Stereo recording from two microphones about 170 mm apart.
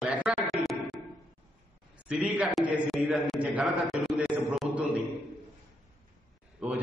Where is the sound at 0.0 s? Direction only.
5° right (ahead or behind).